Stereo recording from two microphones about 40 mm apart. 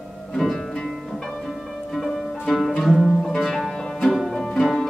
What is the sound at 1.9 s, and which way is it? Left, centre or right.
Music, centre.